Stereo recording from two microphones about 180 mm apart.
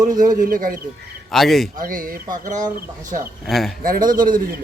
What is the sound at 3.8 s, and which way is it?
Speech, 50° right (ahead or behind).